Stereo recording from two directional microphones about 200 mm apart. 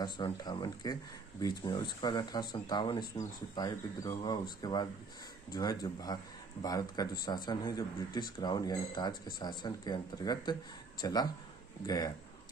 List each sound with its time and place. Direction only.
0.0 s speech: 20° left (ahead or behind)